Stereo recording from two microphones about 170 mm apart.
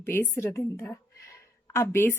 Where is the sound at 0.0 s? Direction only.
10° left (ahead or behind).